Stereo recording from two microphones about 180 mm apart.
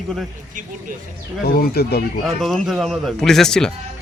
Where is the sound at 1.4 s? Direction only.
55° left (ahead or behind).